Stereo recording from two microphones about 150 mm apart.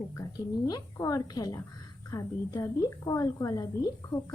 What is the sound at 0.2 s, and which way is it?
A woman's voice, 25° left (ahead or behind).